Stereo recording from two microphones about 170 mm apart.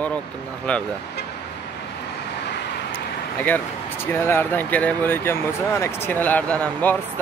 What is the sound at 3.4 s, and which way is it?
Speech, 10° left (ahead or behind).